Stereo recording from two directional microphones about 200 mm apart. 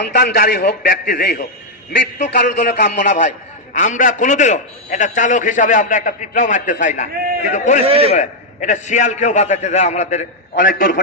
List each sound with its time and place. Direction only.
0.1 s a man's voice: 50° left (ahead or behind)
3.0 s a man's voice: 40° left (ahead or behind)
7.9 s a man's voice: 30° right (ahead or behind)
8.1 s a man's voice: 35° left (ahead or behind)